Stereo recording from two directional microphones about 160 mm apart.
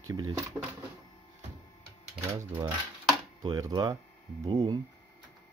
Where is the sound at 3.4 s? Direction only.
25° right (ahead or behind).